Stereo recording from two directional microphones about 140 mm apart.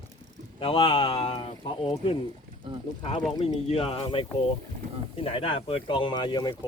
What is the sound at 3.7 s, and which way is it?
Speech, 45° left (ahead or behind).